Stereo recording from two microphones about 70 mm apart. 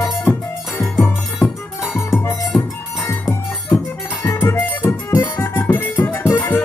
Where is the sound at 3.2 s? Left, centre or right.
Left.